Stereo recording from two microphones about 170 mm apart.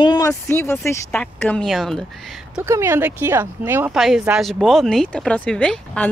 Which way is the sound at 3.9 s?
Centre (ahead or behind).